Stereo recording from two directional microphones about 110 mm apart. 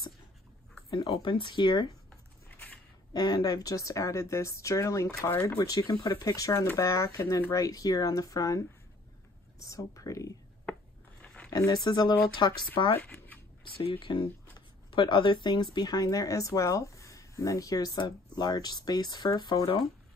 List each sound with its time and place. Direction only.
1.1 s speech: 50° left (ahead or behind)
3.1 s speech: 35° left (ahead or behind)
9.7 s speech: 30° left (ahead or behind)
10.7 s a sound: 10° left (ahead or behind)
11.5 s speech: 35° left (ahead or behind)